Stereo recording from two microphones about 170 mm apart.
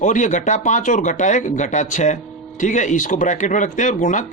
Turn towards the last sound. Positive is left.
turn(degrees=50)  # may be behind; listen again after turning